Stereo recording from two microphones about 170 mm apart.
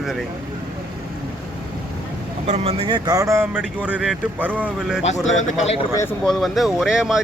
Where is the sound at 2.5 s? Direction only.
35° right (ahead or behind); by 5.0 s 10° right (ahead or behind).